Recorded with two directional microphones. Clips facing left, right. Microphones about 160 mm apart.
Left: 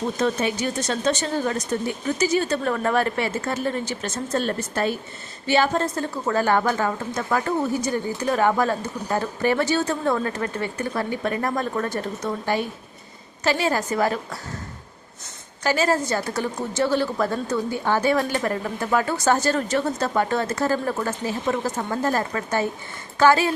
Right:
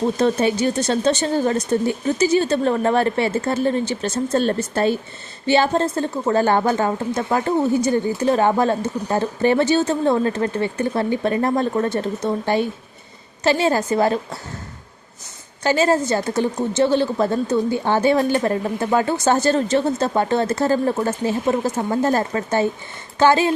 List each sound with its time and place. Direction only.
0.2 s a woman's voice: 35° right (ahead or behind)
15.6 s a woman's voice: 25° right (ahead or behind)